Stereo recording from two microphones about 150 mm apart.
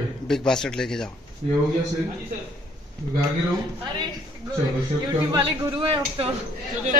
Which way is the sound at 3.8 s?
25° right (ahead or behind).